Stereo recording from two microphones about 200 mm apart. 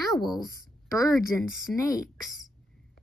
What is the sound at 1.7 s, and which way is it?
Speech, 15° left (ahead or behind).